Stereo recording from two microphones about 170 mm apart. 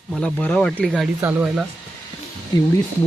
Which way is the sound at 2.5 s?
25° left (ahead or behind).